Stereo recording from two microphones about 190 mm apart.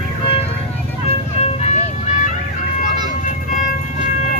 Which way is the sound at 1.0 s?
35° left (ahead or behind).